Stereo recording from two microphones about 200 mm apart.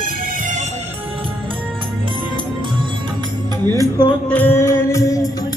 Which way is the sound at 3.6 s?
20° right (ahead or behind).